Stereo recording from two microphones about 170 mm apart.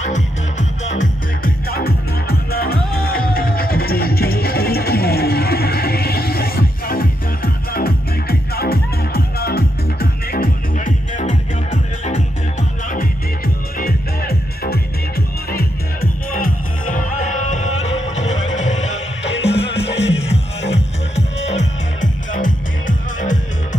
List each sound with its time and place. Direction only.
0.0 s music: 45° left (ahead or behind); by 10.5 s 60° left (ahead or behind)
11.1 s music: 45° left (ahead or behind)
13.7 s music: 65° left (ahead or behind); by 19.3 s 40° left (ahead or behind)
19.5 s music: 90° left
22.3 s music: 50° left (ahead or behind)